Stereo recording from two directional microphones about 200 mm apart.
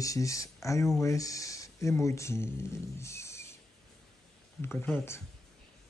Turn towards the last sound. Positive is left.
turn(degrees=10)  # may be behind; listen again after turning